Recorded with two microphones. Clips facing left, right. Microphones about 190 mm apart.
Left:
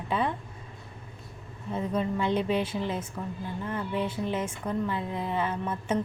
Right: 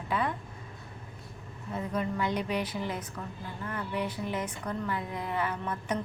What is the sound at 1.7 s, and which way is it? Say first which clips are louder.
A woman's voice: left 3 dB; 25° left (ahead or behind).